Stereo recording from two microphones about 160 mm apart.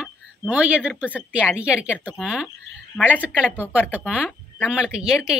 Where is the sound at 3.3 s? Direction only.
10° left (ahead or behind).